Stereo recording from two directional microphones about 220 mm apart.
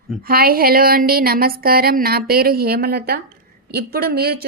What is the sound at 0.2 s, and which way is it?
A woman's voice, 45° right (ahead or behind).